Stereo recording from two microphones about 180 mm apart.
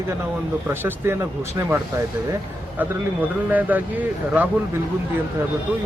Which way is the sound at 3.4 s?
10° right (ahead or behind).